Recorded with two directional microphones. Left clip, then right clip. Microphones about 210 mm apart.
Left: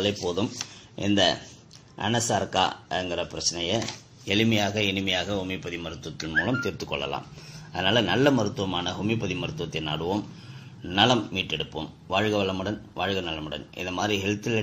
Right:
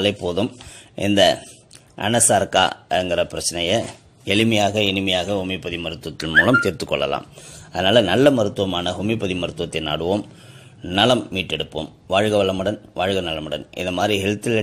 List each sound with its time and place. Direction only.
0.0 s a man's voice: 40° right (ahead or behind)